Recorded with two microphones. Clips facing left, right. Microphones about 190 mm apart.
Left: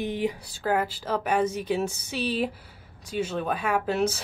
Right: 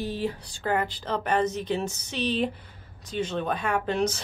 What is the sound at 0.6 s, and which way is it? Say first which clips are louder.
A woman's voice: left 1 dB; 5° left (ahead or behind).